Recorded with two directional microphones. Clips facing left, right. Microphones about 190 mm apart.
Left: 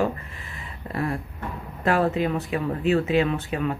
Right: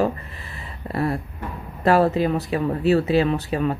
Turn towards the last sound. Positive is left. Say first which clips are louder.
# right 4 dB
turn(degrees=-35)  # may be behind; listen again after turning